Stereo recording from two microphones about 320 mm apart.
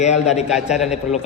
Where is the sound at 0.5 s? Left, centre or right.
Centre.